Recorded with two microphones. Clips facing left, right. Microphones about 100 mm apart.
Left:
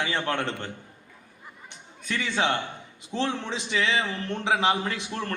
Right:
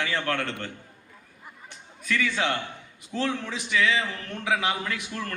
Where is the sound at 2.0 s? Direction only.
25° left (ahead or behind).